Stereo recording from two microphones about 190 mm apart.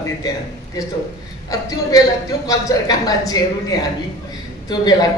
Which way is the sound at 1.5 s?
20° left (ahead or behind).